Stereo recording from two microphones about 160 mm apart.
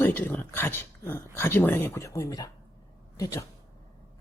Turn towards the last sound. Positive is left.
turn(degrees=20)  # may be behind; listen again after turning